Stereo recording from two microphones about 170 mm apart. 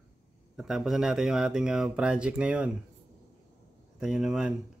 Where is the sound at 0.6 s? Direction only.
Centre (ahead or behind).